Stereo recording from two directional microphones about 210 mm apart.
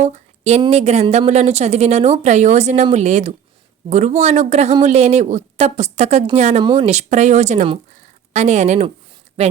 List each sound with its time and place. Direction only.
0.0 s a woman's voice: 30° right (ahead or behind)